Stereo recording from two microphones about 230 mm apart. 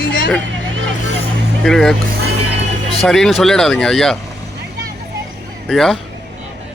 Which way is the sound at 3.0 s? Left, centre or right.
Centre.